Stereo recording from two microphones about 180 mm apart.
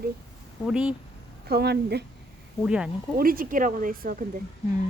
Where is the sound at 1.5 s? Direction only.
60° right (ahead or behind).